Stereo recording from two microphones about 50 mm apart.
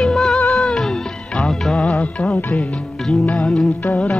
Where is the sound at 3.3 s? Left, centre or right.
Centre.